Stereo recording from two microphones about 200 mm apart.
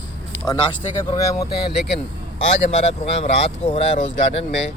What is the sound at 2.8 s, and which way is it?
Speech, 35° left (ahead or behind).